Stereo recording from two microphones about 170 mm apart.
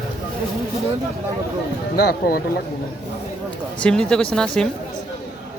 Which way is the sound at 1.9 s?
65° left (ahead or behind).